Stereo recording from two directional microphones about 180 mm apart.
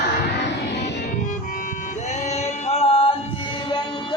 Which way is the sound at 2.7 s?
35° left (ahead or behind).